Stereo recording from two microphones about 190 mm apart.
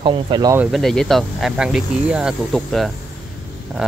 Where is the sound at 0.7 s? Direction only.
Centre (ahead or behind).